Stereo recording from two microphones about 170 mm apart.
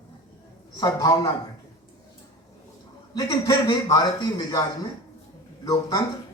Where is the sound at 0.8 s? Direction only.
25° left (ahead or behind).